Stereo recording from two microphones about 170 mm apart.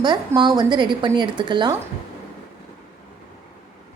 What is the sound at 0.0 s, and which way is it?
A woman's voice, 25° right (ahead or behind).